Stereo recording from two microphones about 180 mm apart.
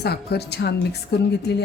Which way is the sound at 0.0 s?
65° left (ahead or behind).